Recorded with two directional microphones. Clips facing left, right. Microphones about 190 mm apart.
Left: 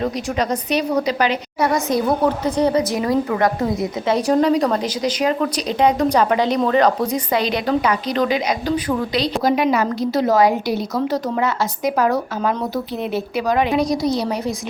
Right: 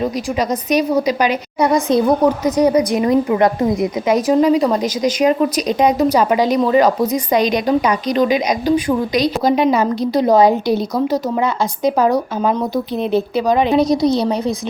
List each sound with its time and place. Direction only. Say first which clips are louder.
0.7 s a woman's voice: right 6 dB; 15° right (ahead or behind)